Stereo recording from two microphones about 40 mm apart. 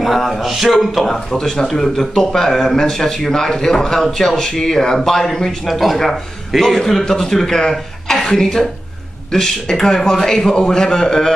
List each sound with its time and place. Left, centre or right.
0.0 s speech: centre
5.7 s speech: centre
7.7 s throat clearing: centre
8.4 s speech: centre